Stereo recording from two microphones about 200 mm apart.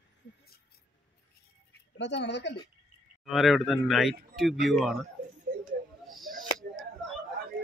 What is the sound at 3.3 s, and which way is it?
A man's voice, centre (ahead or behind).